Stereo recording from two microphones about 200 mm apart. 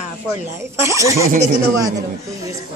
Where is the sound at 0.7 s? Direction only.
15° right (ahead or behind).